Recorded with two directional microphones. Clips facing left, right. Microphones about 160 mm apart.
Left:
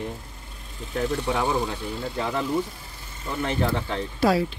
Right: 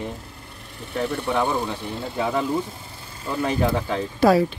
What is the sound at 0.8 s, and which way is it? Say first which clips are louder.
Speech: even; 65° right (ahead or behind).